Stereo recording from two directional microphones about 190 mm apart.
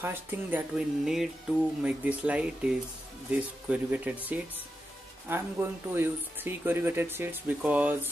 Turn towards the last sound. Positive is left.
turn(degrees=-10)  # may be behind; listen again after turning